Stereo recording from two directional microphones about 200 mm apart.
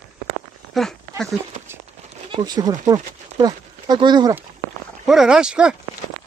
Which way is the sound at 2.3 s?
20° right (ahead or behind).